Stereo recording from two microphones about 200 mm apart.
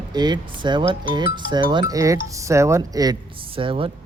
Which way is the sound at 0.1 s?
20° right (ahead or behind).